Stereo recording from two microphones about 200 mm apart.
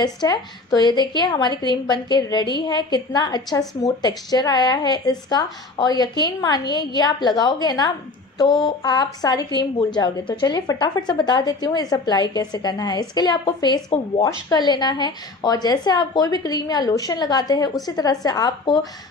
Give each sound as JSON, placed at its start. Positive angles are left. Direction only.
{"t": 0.0, "sound": "a woman's voice", "side_deg": 20}